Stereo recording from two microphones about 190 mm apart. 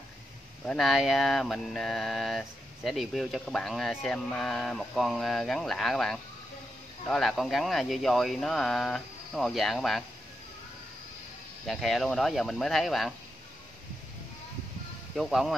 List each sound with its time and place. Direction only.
0.7 s speech: centre (ahead or behind)
11.6 s speech: centre (ahead or behind)
15.1 s speech: centre (ahead or behind)